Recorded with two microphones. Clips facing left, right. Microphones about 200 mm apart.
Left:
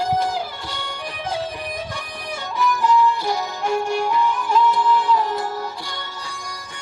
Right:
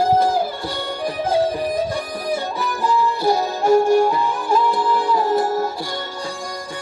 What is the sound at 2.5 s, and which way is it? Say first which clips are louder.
Music: left 7 dB; 35° right (ahead or behind).